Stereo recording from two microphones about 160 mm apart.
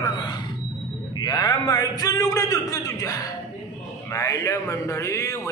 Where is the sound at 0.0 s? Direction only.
25° left (ahead or behind).